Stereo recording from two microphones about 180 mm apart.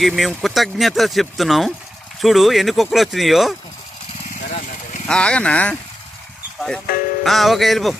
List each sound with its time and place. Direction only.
0.0 s speech: centre (ahead or behind)
4.4 s a sound: 45° left (ahead or behind)
5.0 s speech: 5° left (ahead or behind)